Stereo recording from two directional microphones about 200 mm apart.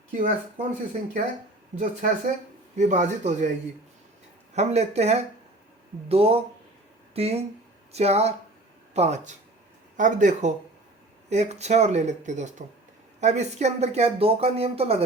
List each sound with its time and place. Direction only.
0.1 s speech: 40° right (ahead or behind)
1.8 s speech: 40° right (ahead or behind)
4.5 s speech: 35° right (ahead or behind)